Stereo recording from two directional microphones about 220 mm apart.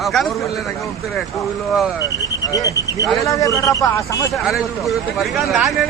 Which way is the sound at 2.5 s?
15° left (ahead or behind).